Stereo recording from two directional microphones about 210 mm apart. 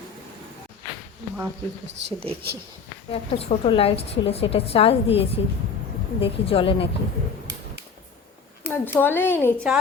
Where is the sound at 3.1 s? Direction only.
30° left (ahead or behind).